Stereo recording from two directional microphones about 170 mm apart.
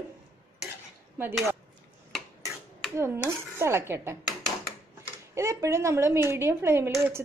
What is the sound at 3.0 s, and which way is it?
A woman's voice, 15° right (ahead or behind).